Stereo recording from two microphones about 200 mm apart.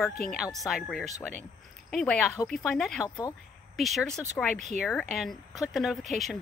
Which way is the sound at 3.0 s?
20° left (ahead or behind).